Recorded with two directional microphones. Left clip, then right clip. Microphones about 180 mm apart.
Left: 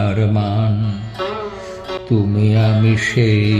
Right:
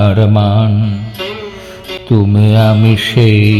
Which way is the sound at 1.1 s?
30° right (ahead or behind).